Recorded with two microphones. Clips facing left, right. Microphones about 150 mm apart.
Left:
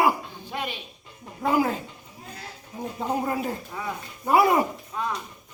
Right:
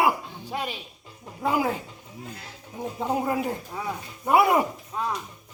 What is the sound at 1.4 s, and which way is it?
Speech, 10° right (ahead or behind).